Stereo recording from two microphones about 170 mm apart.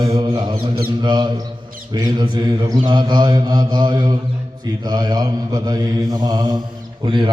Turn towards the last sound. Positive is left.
turn(degrees=-30)  # may be behind; listen again after turning